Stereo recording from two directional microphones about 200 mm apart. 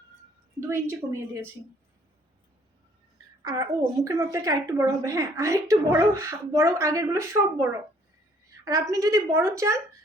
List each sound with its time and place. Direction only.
0.6 s a woman's voice: 15° right (ahead or behind)
3.4 s a woman's voice: 15° right (ahead or behind)